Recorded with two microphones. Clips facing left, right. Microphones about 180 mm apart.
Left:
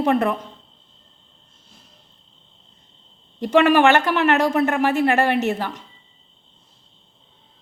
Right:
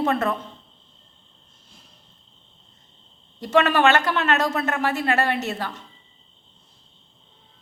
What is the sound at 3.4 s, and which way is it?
Speech, 15° left (ahead or behind).